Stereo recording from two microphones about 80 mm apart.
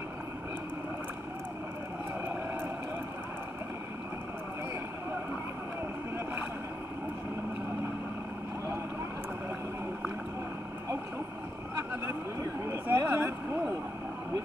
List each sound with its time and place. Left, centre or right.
11.7 s vehicle: right
12.6 s a sound: right
13.1 s vehicle: right